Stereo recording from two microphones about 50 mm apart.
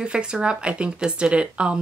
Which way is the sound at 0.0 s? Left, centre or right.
Centre.